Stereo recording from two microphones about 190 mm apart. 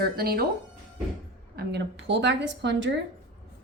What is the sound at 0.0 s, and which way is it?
Speech, 55° right (ahead or behind).